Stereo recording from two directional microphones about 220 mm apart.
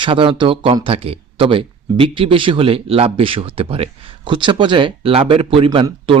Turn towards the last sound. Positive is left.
turn(degrees=-20)  # may be behind; listen again after turning